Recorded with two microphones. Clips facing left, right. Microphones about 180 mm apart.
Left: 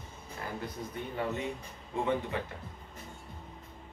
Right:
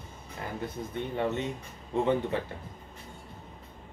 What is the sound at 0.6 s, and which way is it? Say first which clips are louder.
Speech: right 4 dB; 25° right (ahead or behind).